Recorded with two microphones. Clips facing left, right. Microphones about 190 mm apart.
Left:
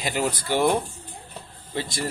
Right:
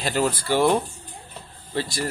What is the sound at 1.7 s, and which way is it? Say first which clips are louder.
Speech: right 2 dB; 20° left (ahead or behind).